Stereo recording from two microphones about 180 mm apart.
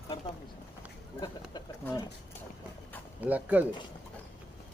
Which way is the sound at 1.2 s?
20° left (ahead or behind).